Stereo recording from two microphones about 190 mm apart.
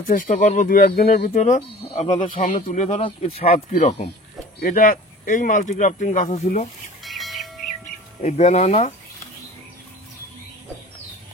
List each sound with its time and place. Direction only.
0.0 s speech: 45° left (ahead or behind)
3.0 s speech: 30° left (ahead or behind)
4.6 s speech: 50° left (ahead or behind)
7.0 s music: centre (ahead or behind)
8.2 s speech: 35° left (ahead or behind)